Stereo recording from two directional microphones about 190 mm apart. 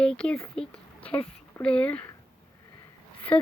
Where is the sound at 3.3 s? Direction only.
5° left (ahead or behind).